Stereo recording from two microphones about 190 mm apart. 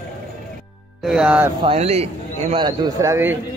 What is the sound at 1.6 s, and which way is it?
A man's voice, 30° right (ahead or behind).